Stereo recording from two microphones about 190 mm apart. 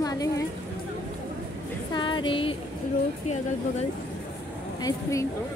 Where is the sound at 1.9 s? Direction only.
25° left (ahead or behind).